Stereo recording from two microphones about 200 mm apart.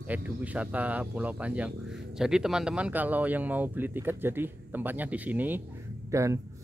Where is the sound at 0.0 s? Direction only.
10° right (ahead or behind).